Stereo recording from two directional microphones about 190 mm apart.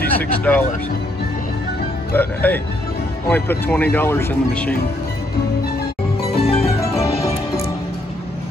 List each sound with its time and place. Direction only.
0.0 s speech: 10° left (ahead or behind)
2.1 s speech: 10° left (ahead or behind)
6.3 s music: 30° left (ahead or behind)